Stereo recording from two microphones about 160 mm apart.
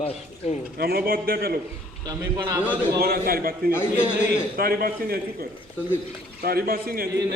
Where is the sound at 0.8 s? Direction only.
75° right (ahead or behind).